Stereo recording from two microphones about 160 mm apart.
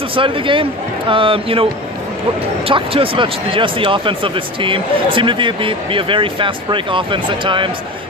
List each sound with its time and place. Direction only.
0.1 s speech: 35° right (ahead or behind)
2.7 s speech: 35° right (ahead or behind)